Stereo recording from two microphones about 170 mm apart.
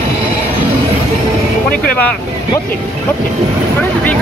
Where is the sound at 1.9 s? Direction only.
5° left (ahead or behind).